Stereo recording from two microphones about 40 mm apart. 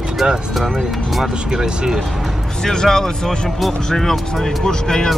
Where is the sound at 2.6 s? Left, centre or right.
Centre.